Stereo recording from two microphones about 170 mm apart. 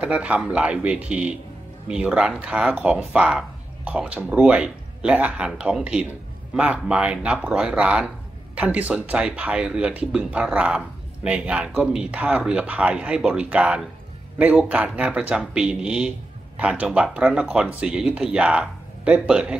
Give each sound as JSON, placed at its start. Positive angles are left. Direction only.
{"t": 0.0, "sound": "speech", "side_deg": -5}